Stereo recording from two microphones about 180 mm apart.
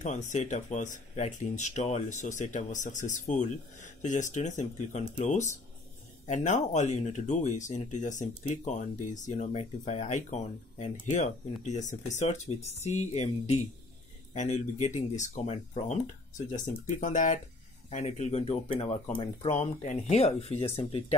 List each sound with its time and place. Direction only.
0.0 s speech: 40° left (ahead or behind)